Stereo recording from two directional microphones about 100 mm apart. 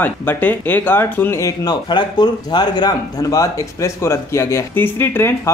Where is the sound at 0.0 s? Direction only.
20° left (ahead or behind).